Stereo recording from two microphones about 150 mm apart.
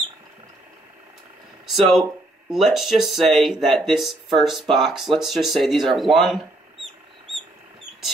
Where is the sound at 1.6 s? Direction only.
Centre (ahead or behind).